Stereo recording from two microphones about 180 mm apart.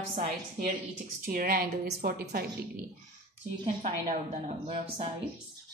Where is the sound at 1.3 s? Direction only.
55° right (ahead or behind).